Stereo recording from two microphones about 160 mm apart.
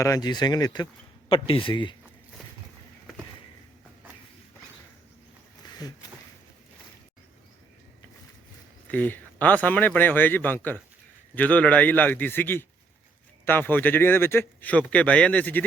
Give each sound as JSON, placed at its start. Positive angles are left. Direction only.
{"t": 0.0, "sound": "speech", "side_deg": 25}
{"t": 5.6, "sound": "a sound", "side_deg": 25}
{"t": 8.9, "sound": "a man's voice", "side_deg": 10}